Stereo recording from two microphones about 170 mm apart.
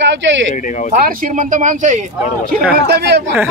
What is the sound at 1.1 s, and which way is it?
Speech, 55° right (ahead or behind).